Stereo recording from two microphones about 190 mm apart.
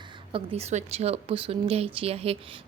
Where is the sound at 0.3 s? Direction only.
35° right (ahead or behind).